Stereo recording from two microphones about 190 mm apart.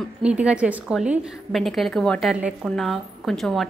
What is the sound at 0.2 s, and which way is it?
A woman's voice, 5° right (ahead or behind).